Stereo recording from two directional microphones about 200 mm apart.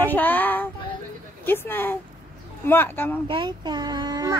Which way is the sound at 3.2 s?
25° right (ahead or behind).